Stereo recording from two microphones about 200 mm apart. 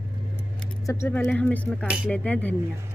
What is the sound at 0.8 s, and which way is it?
Speech, 15° left (ahead or behind).